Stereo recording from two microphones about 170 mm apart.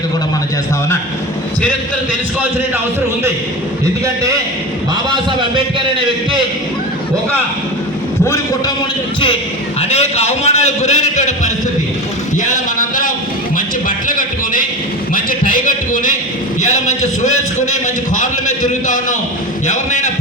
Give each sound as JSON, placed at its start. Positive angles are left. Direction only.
{"t": 9.9, "sound": "a man's voice", "side_deg": 40}
{"t": 13.8, "sound": "music", "side_deg": 55}
{"t": 15.1, "sound": "a sound", "side_deg": 55}
{"t": 16.6, "sound": "a man's voice", "side_deg": 45}